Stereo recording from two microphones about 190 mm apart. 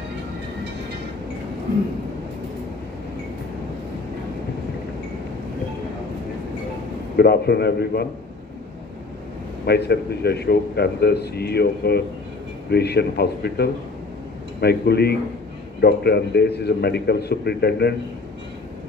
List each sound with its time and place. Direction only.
7.2 s a man's voice: 60° left (ahead or behind)
9.7 s a man's voice: 60° left (ahead or behind)